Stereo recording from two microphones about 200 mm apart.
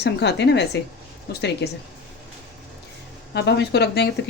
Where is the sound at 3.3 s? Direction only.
60° left (ahead or behind).